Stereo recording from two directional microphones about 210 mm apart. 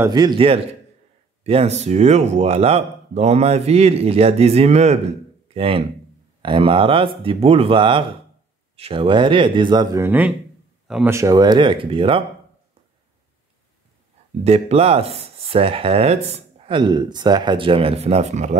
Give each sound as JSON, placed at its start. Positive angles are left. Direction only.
{"t": 0.0, "sound": "speech", "side_deg": -20}
{"t": 14.4, "sound": "speech", "side_deg": -30}